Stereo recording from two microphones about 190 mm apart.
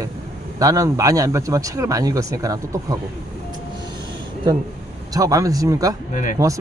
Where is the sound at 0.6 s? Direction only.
15° right (ahead or behind).